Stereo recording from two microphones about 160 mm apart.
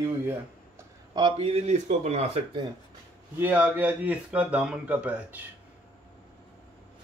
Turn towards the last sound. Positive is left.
turn(degrees=-10)  # may be behind; listen again after turning